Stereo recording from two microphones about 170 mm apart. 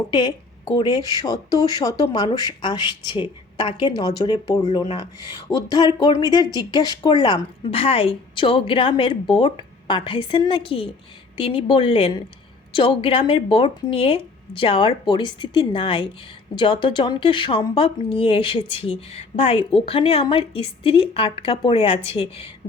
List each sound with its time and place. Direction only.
0.1 s a woman's voice: 25° left (ahead or behind)